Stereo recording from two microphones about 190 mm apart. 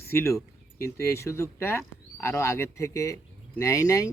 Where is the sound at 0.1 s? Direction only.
15° left (ahead or behind).